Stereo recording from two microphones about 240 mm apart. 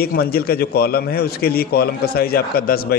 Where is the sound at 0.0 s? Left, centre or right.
Left.